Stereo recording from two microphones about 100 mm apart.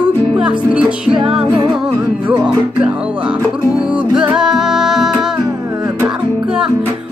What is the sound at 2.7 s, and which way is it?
Music, 10° right (ahead or behind).